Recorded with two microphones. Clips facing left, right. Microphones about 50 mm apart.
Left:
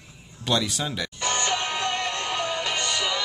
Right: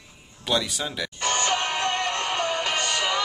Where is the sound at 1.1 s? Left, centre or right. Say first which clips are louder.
Right 2 dB; right.